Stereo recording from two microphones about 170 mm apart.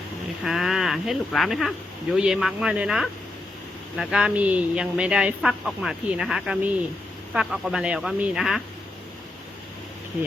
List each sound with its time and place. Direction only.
0.4 s speech: centre (ahead or behind)